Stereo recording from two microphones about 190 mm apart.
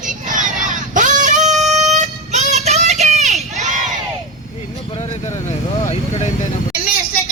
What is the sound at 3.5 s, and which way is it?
Crowd, 40° right (ahead or behind).